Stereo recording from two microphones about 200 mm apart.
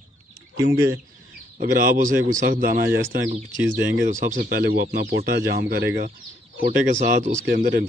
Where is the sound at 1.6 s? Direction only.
45° right (ahead or behind).